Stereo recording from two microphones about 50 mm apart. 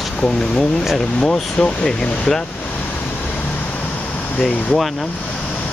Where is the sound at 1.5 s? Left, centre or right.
Centre.